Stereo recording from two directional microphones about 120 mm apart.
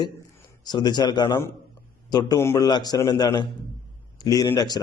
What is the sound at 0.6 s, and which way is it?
A man's voice, 35° left (ahead or behind).